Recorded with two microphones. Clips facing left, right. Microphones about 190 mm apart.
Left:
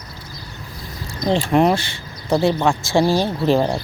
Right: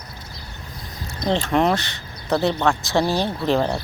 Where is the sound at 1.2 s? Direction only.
10° left (ahead or behind).